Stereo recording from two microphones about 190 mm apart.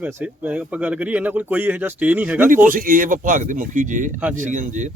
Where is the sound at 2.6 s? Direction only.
45° right (ahead or behind).